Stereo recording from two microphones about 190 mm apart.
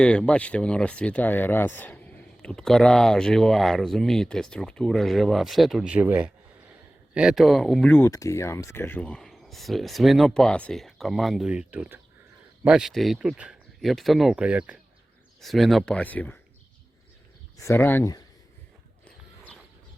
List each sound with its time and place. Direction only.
0.0 s speech: 5° left (ahead or behind)
17.6 s speech: 15° left (ahead or behind)